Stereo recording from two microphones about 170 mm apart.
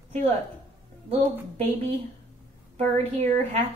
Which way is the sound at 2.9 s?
45° right (ahead or behind).